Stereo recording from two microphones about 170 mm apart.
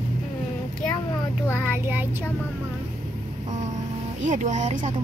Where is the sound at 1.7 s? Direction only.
10° right (ahead or behind).